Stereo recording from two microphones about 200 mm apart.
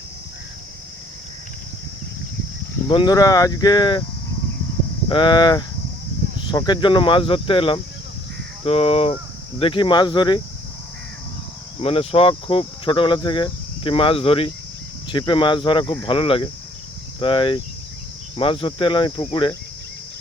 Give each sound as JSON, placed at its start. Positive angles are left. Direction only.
{"t": 2.8, "sound": "speech", "side_deg": 20}
{"t": 5.0, "sound": "speech", "side_deg": 25}
{"t": 11.8, "sound": "speech", "side_deg": 30}